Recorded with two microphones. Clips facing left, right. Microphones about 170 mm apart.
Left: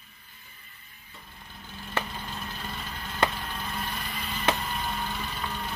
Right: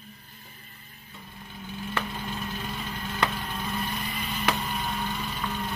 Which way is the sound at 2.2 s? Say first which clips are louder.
Right 4 dB; centre (ahead or behind).